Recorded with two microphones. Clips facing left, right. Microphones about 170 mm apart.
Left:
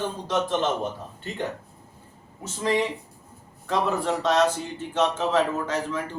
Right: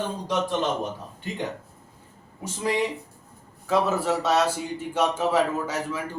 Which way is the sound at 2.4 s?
15° right (ahead or behind).